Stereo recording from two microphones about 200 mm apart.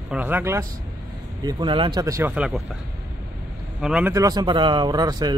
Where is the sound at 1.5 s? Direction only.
25° right (ahead or behind); by 2.6 s 5° right (ahead or behind).